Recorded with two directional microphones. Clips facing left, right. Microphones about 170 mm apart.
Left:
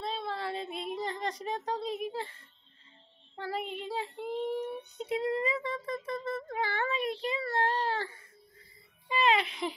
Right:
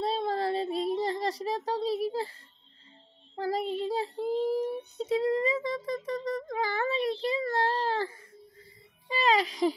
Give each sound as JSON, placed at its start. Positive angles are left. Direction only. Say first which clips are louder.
{"t": 0.0, "sound": "child singing", "louder": "right 7 dB", "side_deg": -40}
{"t": 3.3, "sound": "child singing", "louder": "right 6 dB", "side_deg": -40}